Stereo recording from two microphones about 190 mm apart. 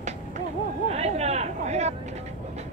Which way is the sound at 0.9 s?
35° right (ahead or behind).